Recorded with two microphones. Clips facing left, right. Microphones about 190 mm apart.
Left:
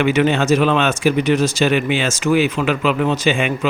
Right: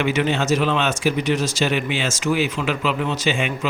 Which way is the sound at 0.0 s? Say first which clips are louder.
Left 5 dB; 60° left (ahead or behind).